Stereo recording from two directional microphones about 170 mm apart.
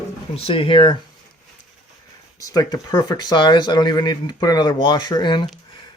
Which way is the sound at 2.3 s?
20° left (ahead or behind).